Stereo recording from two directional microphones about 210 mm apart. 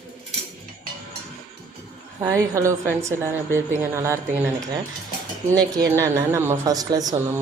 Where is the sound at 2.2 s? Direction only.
15° right (ahead or behind).